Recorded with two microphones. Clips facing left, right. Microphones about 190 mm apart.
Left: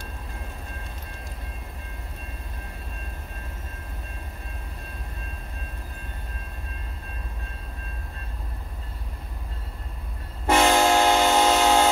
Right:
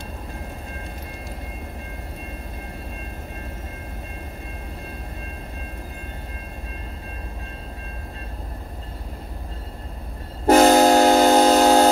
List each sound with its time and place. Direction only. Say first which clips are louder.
10.4 s train: right 6 dB; 40° right (ahead or behind)